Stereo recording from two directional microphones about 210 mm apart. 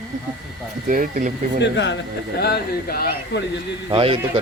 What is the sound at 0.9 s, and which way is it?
Speech, 40° right (ahead or behind).